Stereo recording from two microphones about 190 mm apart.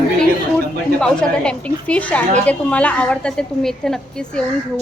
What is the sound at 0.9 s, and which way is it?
A woman's voice, 5° left (ahead or behind).